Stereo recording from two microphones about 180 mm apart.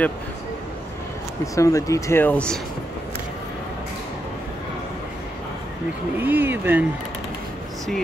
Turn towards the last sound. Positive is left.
turn(degrees=-10)  # may be behind; listen again after turning